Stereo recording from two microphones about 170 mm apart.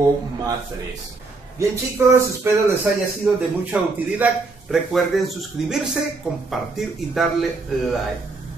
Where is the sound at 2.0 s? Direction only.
15° right (ahead or behind).